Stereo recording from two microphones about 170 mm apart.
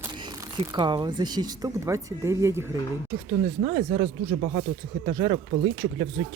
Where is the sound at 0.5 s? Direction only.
25° right (ahead or behind).